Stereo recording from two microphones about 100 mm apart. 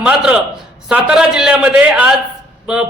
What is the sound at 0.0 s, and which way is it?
A man's voice, 5° right (ahead or behind).